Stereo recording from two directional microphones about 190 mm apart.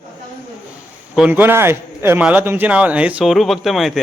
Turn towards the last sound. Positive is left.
turn(degrees=0)  # may be behind; listen again after turning